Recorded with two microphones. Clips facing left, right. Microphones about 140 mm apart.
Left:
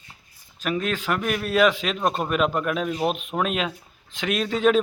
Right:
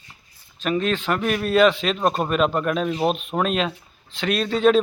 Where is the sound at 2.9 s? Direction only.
25° right (ahead or behind).